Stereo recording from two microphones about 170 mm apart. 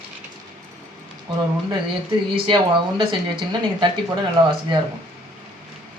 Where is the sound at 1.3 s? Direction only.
30° right (ahead or behind).